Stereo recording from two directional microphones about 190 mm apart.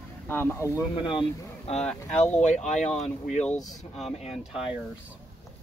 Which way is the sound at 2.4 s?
40° left (ahead or behind).